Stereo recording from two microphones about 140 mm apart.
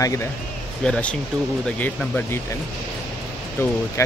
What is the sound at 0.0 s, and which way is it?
Speech, 25° left (ahead or behind).